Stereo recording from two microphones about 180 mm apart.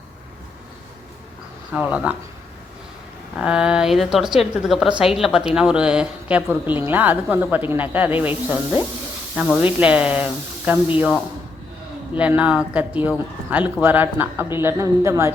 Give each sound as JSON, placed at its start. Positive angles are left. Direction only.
{"t": 1.7, "sound": "speech", "side_deg": -5}
{"t": 3.3, "sound": "a woman's voice", "side_deg": -5}
{"t": 12.1, "sound": "speech", "side_deg": -5}